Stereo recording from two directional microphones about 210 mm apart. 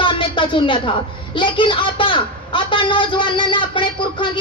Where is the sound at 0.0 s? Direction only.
25° left (ahead or behind).